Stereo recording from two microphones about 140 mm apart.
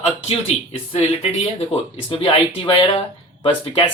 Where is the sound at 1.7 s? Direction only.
40° left (ahead or behind).